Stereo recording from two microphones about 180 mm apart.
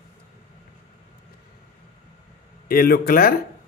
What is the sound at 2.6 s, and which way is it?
Speech, 55° left (ahead or behind).